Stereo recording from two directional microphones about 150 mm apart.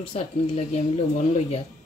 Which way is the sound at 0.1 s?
45° left (ahead or behind).